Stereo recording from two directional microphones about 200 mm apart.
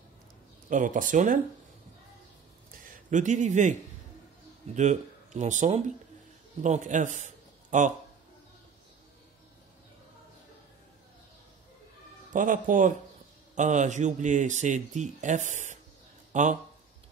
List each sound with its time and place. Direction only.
0.7 s speech: 40° right (ahead or behind)
2.8 s speech: 40° right (ahead or behind)
4.7 s a man's voice: 35° right (ahead or behind)
12.3 s speech: 40° right (ahead or behind)
16.3 s a sound: 35° right (ahead or behind)